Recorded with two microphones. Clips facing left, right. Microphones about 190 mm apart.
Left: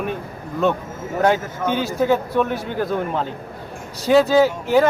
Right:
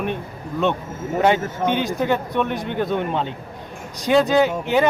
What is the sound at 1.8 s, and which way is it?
Speech, 5° left (ahead or behind).